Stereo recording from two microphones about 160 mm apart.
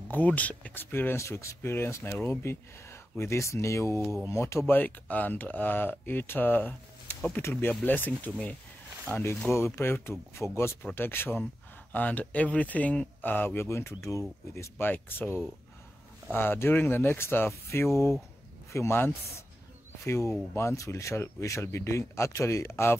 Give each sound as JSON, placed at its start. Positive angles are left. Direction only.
{"t": 0.1, "sound": "speech", "side_deg": 10}